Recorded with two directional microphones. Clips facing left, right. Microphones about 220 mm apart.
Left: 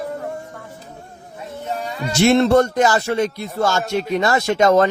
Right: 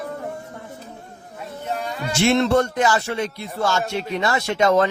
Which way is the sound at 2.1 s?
40° left (ahead or behind).